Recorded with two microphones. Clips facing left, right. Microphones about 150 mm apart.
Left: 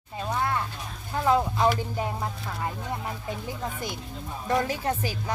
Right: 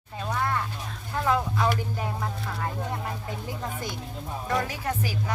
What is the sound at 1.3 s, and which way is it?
Music, 20° left (ahead or behind).